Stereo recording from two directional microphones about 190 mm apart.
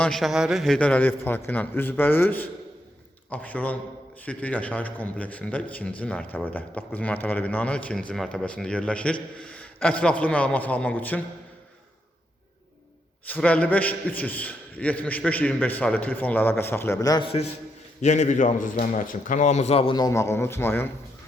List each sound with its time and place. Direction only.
0.0 s a man's voice: centre (ahead or behind)
13.2 s speech: 5° left (ahead or behind)
18.0 s a man's voice: 40° left (ahead or behind); by 20.8 s 10° left (ahead or behind)